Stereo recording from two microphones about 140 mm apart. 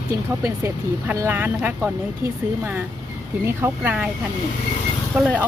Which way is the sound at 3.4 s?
15° right (ahead or behind).